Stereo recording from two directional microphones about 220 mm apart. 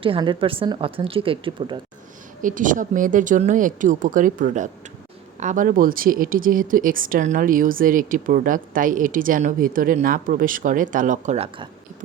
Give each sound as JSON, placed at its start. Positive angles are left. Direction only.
{"t": 0.0, "sound": "speech", "side_deg": -25}
{"t": 2.4, "sound": "speech", "side_deg": -35}